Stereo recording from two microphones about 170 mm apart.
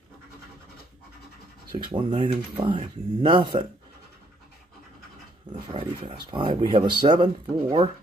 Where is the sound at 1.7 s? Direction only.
30° right (ahead or behind).